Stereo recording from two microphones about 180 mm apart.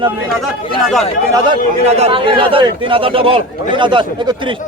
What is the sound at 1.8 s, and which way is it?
A man's voice, 30° right (ahead or behind).